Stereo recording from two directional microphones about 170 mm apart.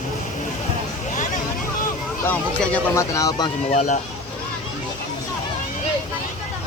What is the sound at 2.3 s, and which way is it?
Speech, 15° left (ahead or behind).